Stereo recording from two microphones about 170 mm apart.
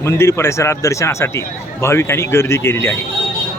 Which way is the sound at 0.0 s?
15° left (ahead or behind).